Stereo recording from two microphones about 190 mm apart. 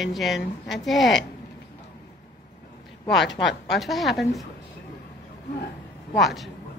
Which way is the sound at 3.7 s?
Centre (ahead or behind).